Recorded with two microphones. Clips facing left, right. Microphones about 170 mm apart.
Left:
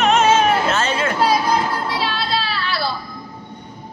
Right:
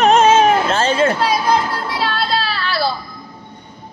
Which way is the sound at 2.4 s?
35° right (ahead or behind).